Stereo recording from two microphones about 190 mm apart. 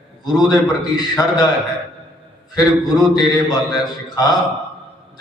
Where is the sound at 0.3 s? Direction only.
20° left (ahead or behind).